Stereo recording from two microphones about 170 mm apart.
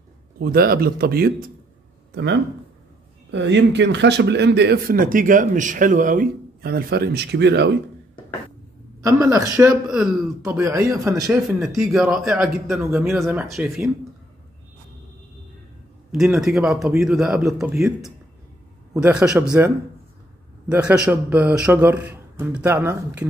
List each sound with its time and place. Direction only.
0.4 s speech: 60° right (ahead or behind)
3.3 s a man's voice: 90° right
9.0 s a man's voice: 20° right (ahead or behind)
9.8 s a man's voice: 5° right (ahead or behind)
10.4 s a man's voice: 15° right (ahead or behind)
11.3 s a man's voice: centre (ahead or behind)
16.3 s a man's voice: centre (ahead or behind)
20.6 s a man's voice: 5° right (ahead or behind)